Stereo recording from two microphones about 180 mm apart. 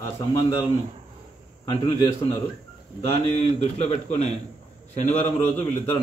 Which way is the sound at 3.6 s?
35° left (ahead or behind).